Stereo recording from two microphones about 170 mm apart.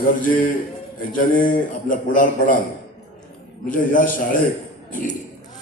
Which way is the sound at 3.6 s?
50° left (ahead or behind).